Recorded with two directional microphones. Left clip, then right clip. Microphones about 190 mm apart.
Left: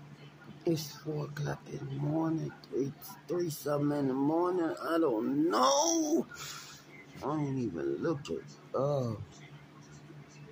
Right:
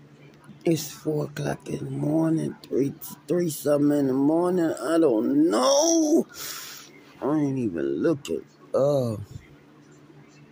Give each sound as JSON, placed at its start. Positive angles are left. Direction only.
{"t": 0.7, "sound": "speech", "side_deg": -40}
{"t": 7.2, "sound": "speech", "side_deg": -40}